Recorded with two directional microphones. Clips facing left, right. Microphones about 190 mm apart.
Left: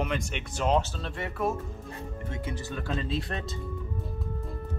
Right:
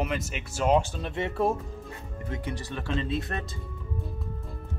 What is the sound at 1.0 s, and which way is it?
Speech, 20° right (ahead or behind).